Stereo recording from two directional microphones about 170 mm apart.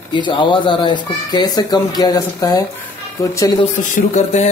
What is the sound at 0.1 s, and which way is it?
Speech, 25° left (ahead or behind).